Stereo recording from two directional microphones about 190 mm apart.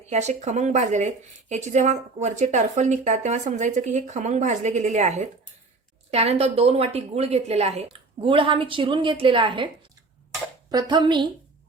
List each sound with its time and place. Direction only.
0.0 s speech: 35° right (ahead or behind)
10.7 s speech: 20° right (ahead or behind)